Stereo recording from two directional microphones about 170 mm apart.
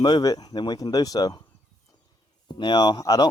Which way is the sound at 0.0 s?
25° left (ahead or behind).